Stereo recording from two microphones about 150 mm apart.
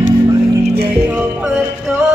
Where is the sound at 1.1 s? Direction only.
5° right (ahead or behind).